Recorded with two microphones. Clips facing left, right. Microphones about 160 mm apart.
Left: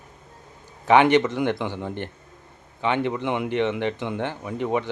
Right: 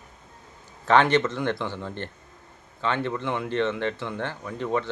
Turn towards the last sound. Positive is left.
turn(degrees=15)  # may be behind; listen again after turning